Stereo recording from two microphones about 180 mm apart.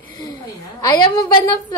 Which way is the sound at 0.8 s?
20° left (ahead or behind).